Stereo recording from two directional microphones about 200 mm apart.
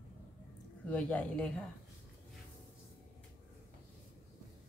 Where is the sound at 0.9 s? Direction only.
5° left (ahead or behind).